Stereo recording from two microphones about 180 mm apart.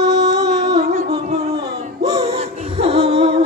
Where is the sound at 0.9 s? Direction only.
55° right (ahead or behind).